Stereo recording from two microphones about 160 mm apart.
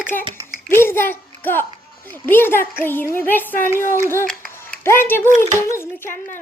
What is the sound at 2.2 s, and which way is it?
Speech, 15° left (ahead or behind).